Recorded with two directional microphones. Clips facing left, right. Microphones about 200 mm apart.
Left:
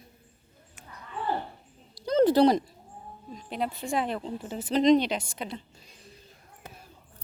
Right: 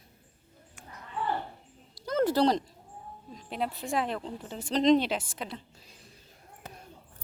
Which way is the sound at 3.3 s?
Centre (ahead or behind).